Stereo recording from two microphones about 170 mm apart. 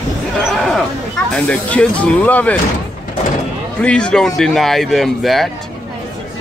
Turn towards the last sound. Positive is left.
turn(degrees=0)  # may be behind; listen again after turning